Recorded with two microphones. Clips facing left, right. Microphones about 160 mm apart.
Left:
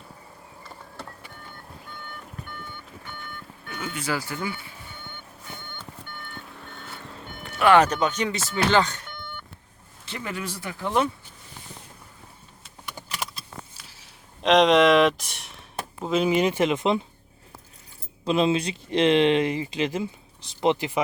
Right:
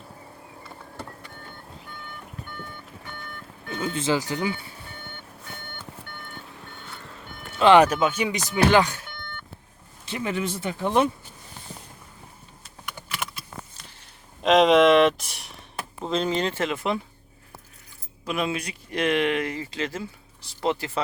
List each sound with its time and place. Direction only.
3.7 s speech: 25° right (ahead or behind)
7.6 s speech: 20° right (ahead or behind)
7.9 s speech: 5° right (ahead or behind)
10.1 s speech: 20° right (ahead or behind)
13.7 s a sound: 5° left (ahead or behind)
16.0 s speech: 10° left (ahead or behind)
18.3 s speech: 25° left (ahead or behind)